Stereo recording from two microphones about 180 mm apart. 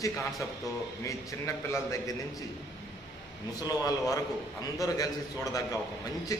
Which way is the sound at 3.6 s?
20° left (ahead or behind).